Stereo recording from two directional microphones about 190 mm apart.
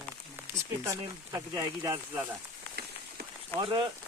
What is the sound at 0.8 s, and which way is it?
Speech, 15° right (ahead or behind).